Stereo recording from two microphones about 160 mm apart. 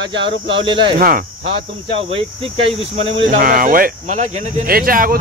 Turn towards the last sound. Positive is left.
turn(degrees=-65)  # may be behind; listen again after turning